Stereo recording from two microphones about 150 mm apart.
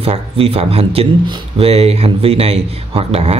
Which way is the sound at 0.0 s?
40° right (ahead or behind).